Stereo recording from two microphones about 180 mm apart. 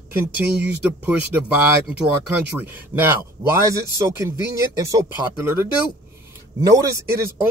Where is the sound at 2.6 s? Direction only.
10° right (ahead or behind).